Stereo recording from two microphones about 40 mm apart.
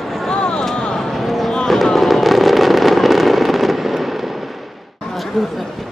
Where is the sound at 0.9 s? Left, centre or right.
Centre.